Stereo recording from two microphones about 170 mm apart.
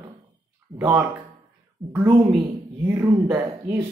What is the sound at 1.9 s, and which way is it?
Speech, 15° right (ahead or behind).